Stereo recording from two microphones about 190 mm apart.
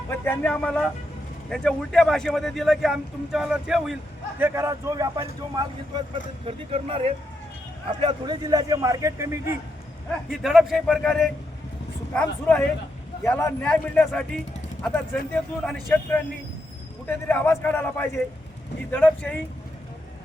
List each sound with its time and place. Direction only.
0.1 s a man's voice: 10° left (ahead or behind)
4.4 s a man's voice: 15° right (ahead or behind)
10.2 s a man's voice: centre (ahead or behind)